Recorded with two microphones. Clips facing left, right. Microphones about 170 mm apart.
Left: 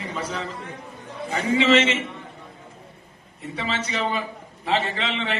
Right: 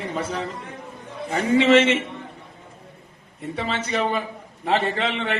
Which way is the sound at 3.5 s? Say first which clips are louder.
Right 3 dB; 55° right (ahead or behind).